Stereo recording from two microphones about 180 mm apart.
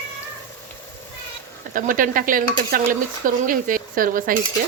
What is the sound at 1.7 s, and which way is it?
Speech, 50° right (ahead or behind).